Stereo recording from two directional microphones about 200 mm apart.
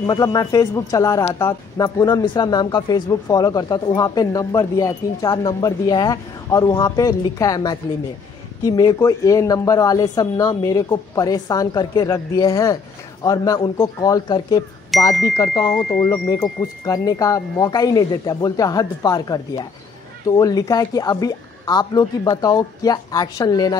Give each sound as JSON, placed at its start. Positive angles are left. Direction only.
{"t": 0.0, "sound": "speech", "side_deg": 20}